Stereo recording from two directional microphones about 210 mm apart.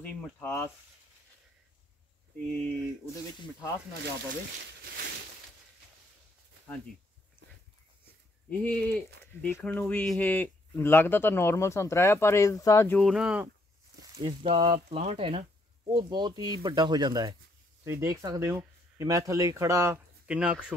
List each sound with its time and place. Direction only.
0.0 s speech: 10° left (ahead or behind)
4.0 s speech: 55° right (ahead or behind)
8.6 s speech: 5° left (ahead or behind)
14.1 s speech: 25° right (ahead or behind); by 20.5 s 5° right (ahead or behind)